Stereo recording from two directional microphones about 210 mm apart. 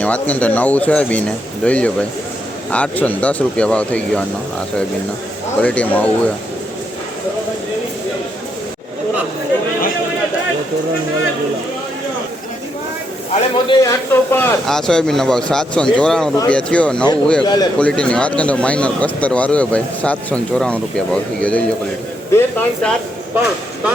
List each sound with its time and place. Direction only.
0.0 s speech: 5° left (ahead or behind)
5.5 s speech: 5° left (ahead or behind)
13.3 s a man's voice: 20° left (ahead or behind)
14.1 s speech: 10° left (ahead or behind)
17.4 s a man's voice: 20° left (ahead or behind)
17.7 s speech: 5° left (ahead or behind)
23.3 s speech: 5° right (ahead or behind)